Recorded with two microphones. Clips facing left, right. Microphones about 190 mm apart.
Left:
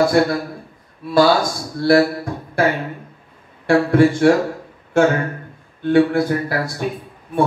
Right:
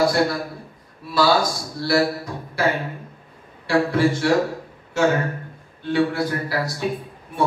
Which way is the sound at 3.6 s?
55° left (ahead or behind).